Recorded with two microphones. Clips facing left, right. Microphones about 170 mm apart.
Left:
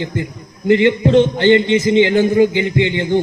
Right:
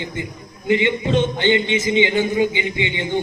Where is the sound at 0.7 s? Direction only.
60° left (ahead or behind).